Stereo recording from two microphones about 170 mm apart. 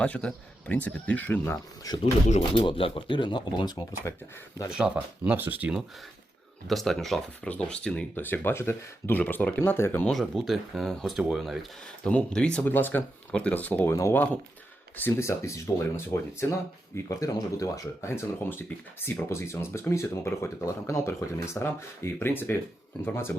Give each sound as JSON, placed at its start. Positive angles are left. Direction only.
{"t": 0.0, "sound": "speech", "side_deg": 5}
{"t": 4.1, "sound": "speech", "side_deg": 15}
{"t": 4.7, "sound": "speech", "side_deg": -5}
{"t": 6.7, "sound": "speech", "side_deg": 0}